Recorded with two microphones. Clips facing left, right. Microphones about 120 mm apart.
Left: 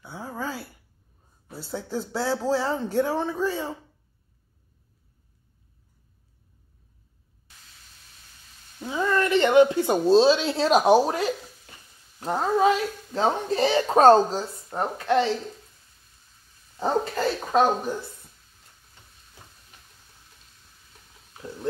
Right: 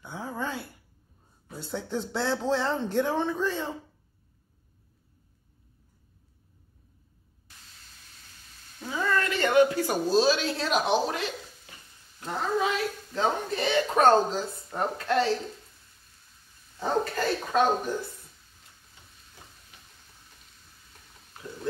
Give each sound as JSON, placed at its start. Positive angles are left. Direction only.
{"t": 0.0, "sound": "a sound", "side_deg": 5}
{"t": 1.5, "sound": "speech", "side_deg": 5}
{"t": 8.7, "sound": "a sound", "side_deg": 20}
{"t": 12.2, "sound": "speech", "side_deg": 40}
{"t": 14.7, "sound": "speech", "side_deg": 20}
{"t": 16.8, "sound": "speech", "side_deg": 25}